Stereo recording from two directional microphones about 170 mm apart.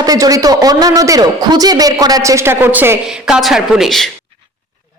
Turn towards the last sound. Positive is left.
turn(degrees=0)  # may be behind; listen again after turning